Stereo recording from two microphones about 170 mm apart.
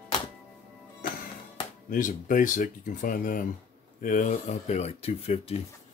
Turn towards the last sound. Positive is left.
turn(degrees=35)  # may be behind; listen again after turning